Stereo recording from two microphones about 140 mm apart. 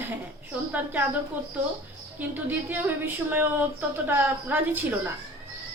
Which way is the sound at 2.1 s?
15° right (ahead or behind).